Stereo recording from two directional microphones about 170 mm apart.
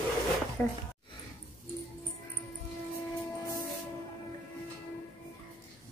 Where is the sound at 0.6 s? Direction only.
10° left (ahead or behind).